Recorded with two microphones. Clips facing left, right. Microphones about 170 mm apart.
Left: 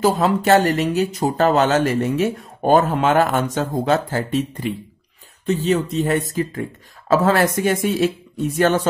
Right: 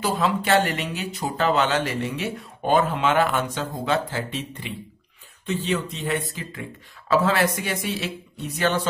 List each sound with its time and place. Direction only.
0.0 s speech: 45° left (ahead or behind)